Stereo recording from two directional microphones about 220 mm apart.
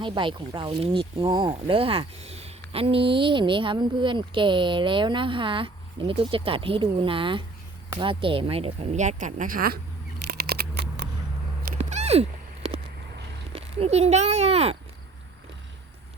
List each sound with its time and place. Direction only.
0.0 s speech: 20° right (ahead or behind); by 9.8 s 40° right (ahead or behind)
10.2 s a sound: 45° right (ahead or behind)
11.6 s cat: 35° right (ahead or behind)
13.5 s speech: 25° right (ahead or behind)